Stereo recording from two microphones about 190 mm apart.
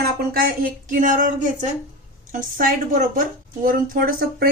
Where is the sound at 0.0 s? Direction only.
50° right (ahead or behind).